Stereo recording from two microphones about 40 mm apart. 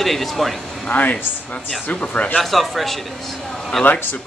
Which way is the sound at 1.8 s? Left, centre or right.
Left.